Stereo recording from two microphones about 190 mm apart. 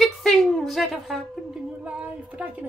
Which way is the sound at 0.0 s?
Centre (ahead or behind).